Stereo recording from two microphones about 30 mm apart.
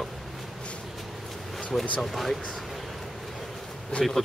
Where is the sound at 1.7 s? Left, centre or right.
Centre.